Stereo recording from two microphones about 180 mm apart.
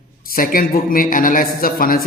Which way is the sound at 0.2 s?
50° left (ahead or behind).